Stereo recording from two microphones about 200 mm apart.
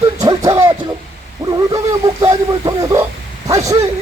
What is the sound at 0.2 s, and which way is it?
Music, 20° right (ahead or behind).